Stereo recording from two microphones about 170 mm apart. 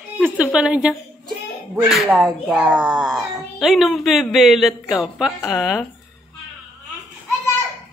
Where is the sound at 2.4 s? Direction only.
5° right (ahead or behind).